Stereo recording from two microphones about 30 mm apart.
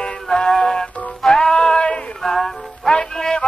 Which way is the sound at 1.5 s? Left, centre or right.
Left.